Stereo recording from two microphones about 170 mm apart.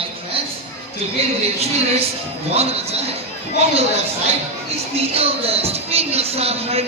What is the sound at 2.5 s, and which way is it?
Speech, 35° right (ahead or behind).